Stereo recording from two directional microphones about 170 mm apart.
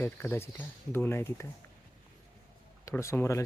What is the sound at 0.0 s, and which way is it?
Speech, 10° left (ahead or behind).